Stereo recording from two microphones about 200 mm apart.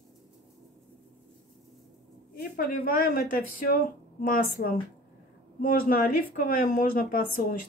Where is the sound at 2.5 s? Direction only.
45° left (ahead or behind).